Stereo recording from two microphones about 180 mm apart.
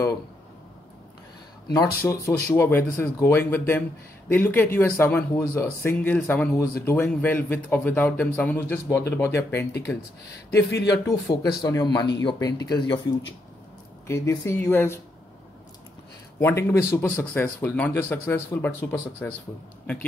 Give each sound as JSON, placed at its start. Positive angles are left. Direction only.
{"t": 2.0, "sound": "speech", "side_deg": 15}
{"t": 10.5, "sound": "speech", "side_deg": 70}
{"t": 10.9, "sound": "speech", "side_deg": 20}
{"t": 14.0, "sound": "speech", "side_deg": 15}
{"t": 16.3, "sound": "speech", "side_deg": 15}